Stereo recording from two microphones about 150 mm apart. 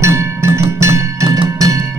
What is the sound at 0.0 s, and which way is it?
Music, 20° right (ahead or behind).